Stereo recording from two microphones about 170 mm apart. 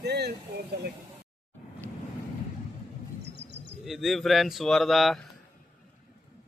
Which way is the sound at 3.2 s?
90° right.